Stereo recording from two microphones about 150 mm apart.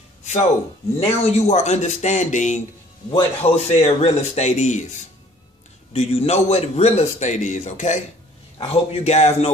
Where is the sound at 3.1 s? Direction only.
40° left (ahead or behind).